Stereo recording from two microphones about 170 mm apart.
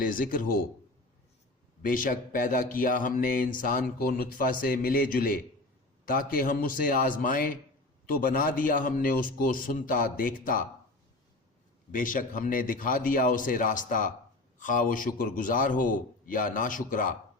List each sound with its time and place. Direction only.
0.0 s speech: 55° left (ahead or behind)
1.8 s speech: 55° left (ahead or behind)
11.9 s a man's voice: 50° left (ahead or behind)